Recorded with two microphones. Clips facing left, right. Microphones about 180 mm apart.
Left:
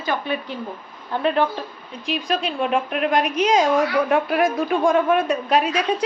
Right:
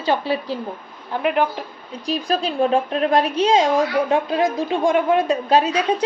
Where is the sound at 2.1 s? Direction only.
35° right (ahead or behind).